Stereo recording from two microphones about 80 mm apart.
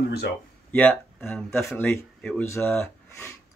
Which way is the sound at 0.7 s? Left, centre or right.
Left.